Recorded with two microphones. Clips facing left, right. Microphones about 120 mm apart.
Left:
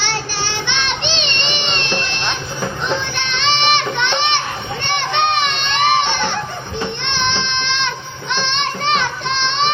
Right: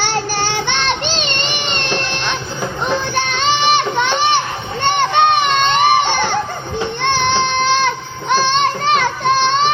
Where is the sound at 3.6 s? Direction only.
40° right (ahead or behind).